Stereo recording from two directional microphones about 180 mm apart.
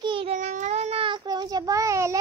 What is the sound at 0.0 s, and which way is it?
Child singing, 30° right (ahead or behind).